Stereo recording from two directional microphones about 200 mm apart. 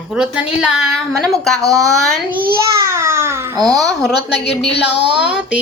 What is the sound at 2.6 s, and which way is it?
Babbling, 15° right (ahead or behind).